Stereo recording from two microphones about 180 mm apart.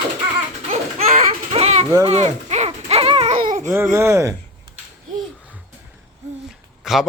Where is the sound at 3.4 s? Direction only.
45° right (ahead or behind).